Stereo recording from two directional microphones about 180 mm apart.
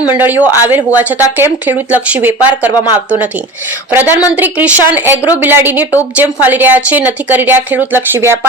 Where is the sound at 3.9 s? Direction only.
10° right (ahead or behind).